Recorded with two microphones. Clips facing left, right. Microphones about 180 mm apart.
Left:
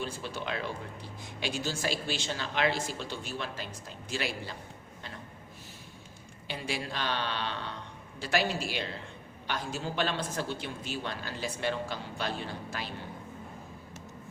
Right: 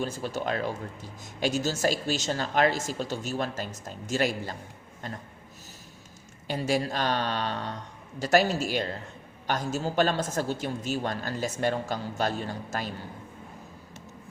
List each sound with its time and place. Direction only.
0.0 s speech: 45° right (ahead or behind)
6.5 s speech: 40° right (ahead or behind)